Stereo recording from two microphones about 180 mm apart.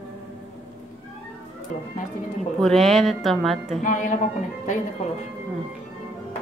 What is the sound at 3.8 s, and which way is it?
Speech, 45° left (ahead or behind).